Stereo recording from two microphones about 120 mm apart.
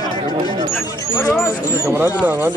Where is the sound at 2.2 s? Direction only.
15° right (ahead or behind).